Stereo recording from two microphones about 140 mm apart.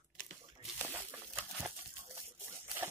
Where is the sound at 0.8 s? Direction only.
15° right (ahead or behind).